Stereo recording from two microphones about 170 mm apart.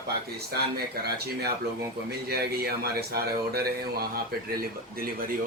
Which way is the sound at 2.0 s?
70° right (ahead or behind).